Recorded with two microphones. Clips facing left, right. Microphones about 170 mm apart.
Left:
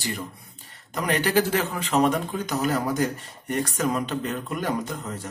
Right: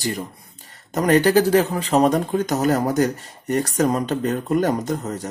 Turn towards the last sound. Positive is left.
turn(degrees=-40)  # may be behind; listen again after turning